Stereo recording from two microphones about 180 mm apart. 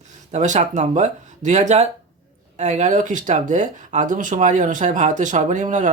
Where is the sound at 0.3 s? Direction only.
40° right (ahead or behind).